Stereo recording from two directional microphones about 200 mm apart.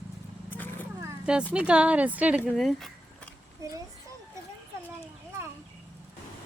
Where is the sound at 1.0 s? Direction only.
5° right (ahead or behind).